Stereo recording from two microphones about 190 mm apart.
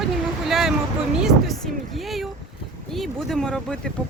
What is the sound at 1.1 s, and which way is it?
Speech, centre (ahead or behind).